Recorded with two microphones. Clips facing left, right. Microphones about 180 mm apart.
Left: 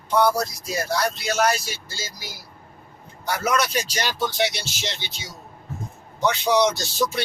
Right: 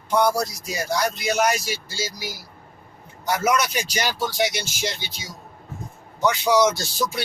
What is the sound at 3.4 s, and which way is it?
Speech, 10° right (ahead or behind).